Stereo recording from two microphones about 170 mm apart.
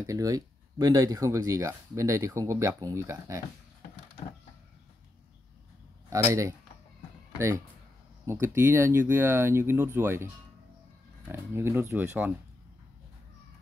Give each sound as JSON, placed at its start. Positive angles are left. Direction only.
{"t": 0.0, "sound": "speech", "side_deg": -20}
{"t": 6.0, "sound": "speech", "side_deg": -15}